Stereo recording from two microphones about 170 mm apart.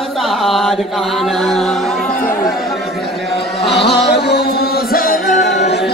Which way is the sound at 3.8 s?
80° left.